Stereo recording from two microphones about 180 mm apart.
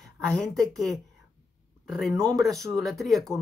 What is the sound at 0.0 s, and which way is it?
A woman's voice, 5° left (ahead or behind).